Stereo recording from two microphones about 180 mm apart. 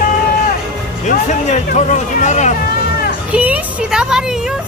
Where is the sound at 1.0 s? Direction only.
45° left (ahead or behind).